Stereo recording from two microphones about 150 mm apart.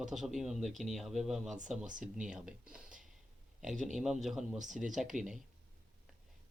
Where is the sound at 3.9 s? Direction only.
Centre (ahead or behind).